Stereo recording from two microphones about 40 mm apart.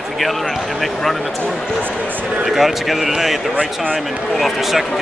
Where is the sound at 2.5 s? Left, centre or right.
Centre.